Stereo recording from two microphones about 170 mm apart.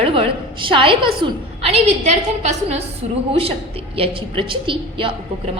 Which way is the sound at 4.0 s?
30° right (ahead or behind).